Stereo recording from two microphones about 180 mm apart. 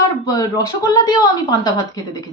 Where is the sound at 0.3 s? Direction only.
20° left (ahead or behind).